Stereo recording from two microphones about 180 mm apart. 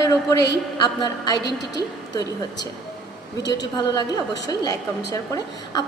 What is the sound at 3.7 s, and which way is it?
A woman's voice, 25° left (ahead or behind).